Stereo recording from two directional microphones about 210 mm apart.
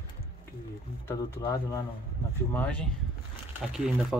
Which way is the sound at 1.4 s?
15° left (ahead or behind).